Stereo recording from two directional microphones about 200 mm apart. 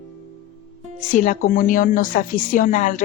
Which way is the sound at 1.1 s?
40° left (ahead or behind).